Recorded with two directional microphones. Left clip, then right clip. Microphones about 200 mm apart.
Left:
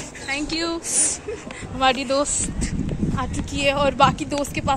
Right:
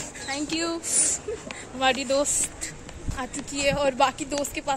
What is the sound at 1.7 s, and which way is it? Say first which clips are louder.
A woman's voice: left 4 dB; 5° right (ahead or behind).